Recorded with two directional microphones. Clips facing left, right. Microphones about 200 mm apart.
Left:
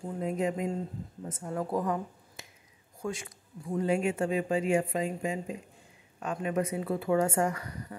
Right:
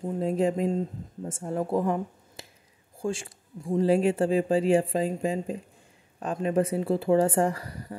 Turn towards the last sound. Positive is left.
turn(degrees=-30)  # may be behind; listen again after turning